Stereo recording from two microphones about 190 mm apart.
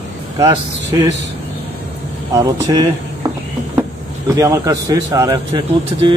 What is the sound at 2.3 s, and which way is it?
Speech, 20° right (ahead or behind).